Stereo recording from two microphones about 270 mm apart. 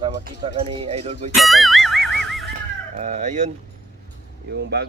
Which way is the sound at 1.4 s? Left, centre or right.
Centre.